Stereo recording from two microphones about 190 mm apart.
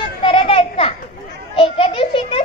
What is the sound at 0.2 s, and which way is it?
Children playing, 30° left (ahead or behind).